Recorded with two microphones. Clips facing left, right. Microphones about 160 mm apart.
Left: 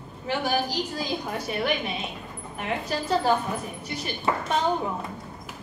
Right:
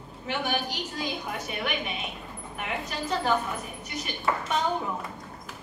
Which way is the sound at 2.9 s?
35° left (ahead or behind).